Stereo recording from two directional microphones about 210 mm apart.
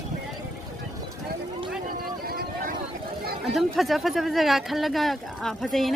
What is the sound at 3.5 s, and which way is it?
Speech, centre (ahead or behind).